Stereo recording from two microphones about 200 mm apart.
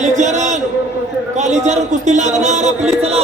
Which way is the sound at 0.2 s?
35° right (ahead or behind).